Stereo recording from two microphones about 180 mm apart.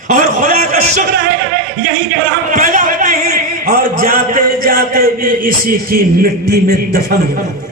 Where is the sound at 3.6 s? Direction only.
50° right (ahead or behind).